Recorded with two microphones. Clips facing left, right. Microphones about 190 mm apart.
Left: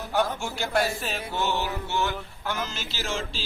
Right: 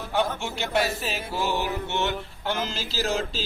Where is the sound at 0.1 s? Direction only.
Centre (ahead or behind).